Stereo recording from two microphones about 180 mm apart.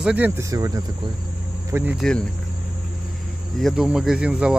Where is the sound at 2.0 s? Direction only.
5° left (ahead or behind).